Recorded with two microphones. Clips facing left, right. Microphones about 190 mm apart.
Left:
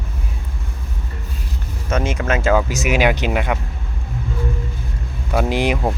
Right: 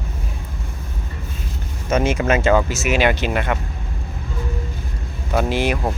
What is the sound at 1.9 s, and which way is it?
Speech, 5° right (ahead or behind).